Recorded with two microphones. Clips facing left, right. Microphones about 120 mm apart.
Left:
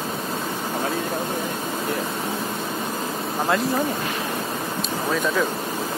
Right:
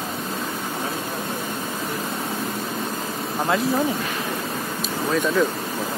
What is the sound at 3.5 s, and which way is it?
Speech, centre (ahead or behind).